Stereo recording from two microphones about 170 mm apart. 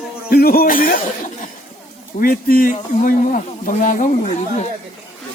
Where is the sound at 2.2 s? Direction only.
55° left (ahead or behind).